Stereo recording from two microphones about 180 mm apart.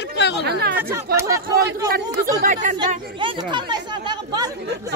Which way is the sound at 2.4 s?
45° right (ahead or behind).